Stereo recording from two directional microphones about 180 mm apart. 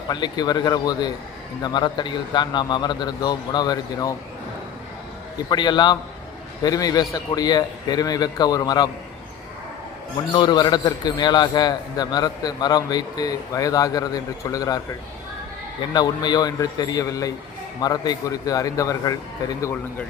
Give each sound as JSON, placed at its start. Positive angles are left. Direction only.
{"t": 0.1, "sound": "a man's voice", "side_deg": 25}
{"t": 5.5, "sound": "a man's voice", "side_deg": 25}
{"t": 10.3, "sound": "a man's voice", "side_deg": 25}
{"t": 15.9, "sound": "a man's voice", "side_deg": 25}
{"t": 19.6, "sound": "speech", "side_deg": 10}